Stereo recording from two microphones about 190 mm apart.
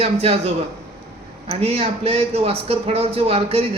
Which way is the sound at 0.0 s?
30° right (ahead or behind).